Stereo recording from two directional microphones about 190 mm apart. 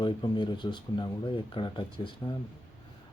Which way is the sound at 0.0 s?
25° left (ahead or behind).